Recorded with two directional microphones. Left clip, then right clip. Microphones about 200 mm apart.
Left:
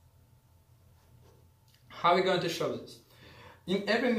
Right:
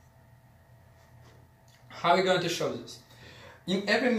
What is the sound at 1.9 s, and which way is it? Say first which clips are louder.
Speech: right 2 dB; 20° left (ahead or behind).